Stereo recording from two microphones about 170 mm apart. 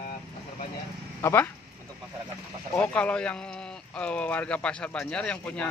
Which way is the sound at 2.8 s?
5° left (ahead or behind).